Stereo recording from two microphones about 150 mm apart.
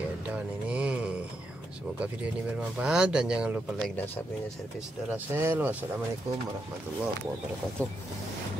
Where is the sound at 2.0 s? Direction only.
5° right (ahead or behind).